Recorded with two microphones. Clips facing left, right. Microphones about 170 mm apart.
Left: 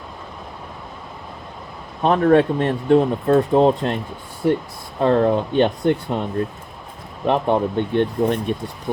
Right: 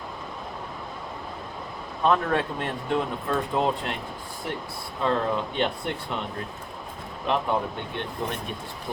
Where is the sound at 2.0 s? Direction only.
45° left (ahead or behind).